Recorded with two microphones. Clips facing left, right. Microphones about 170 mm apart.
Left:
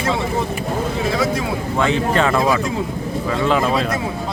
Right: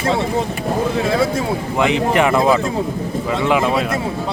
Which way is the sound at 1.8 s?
15° right (ahead or behind).